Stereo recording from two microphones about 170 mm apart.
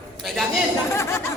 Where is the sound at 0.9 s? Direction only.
15° left (ahead or behind).